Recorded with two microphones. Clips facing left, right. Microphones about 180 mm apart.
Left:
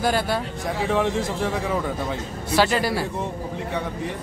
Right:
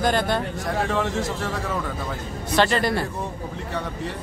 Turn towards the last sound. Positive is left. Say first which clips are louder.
# even
turn(degrees=5)  # may be behind; listen again after turning